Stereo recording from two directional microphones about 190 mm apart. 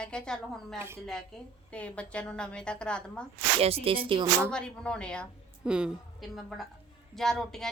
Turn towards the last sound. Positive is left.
turn(degrees=0)  # may be behind; listen again after turning